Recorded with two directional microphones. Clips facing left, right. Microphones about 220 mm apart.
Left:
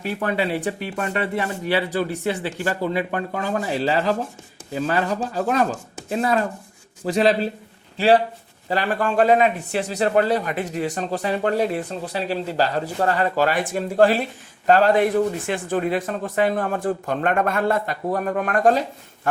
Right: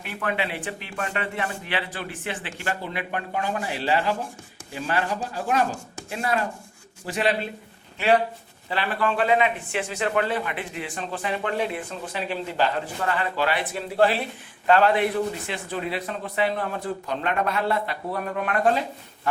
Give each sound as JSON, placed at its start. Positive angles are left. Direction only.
{"t": 0.0, "sound": "speech", "side_deg": 35}
{"t": 8.7, "sound": "speech", "side_deg": 45}